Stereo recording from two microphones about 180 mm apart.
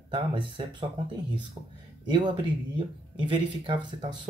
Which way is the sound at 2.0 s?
25° right (ahead or behind).